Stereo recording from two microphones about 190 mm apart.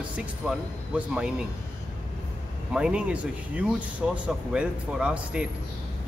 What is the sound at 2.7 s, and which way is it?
Speech, 5° right (ahead or behind).